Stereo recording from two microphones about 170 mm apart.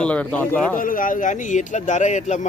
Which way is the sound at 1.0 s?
50° left (ahead or behind).